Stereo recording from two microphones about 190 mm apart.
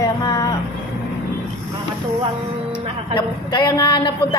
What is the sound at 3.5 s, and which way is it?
Speech, 25° left (ahead or behind).